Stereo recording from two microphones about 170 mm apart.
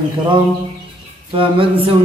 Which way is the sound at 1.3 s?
30° right (ahead or behind).